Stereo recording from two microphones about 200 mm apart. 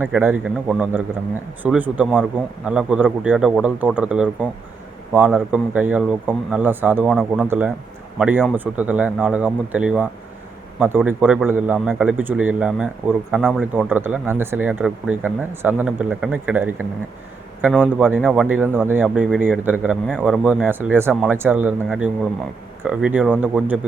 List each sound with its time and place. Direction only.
0.0 s a man's voice: 10° right (ahead or behind)
20.1 s a man's voice: 5° left (ahead or behind)